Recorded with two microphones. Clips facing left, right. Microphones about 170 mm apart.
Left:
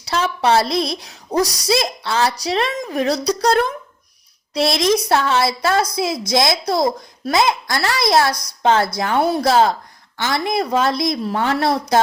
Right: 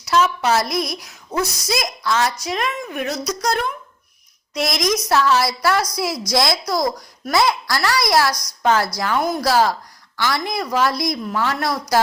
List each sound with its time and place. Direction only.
0.0 s a woman's voice: 30° left (ahead or behind)